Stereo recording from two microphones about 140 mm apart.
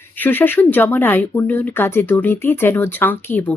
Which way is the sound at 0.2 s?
15° left (ahead or behind).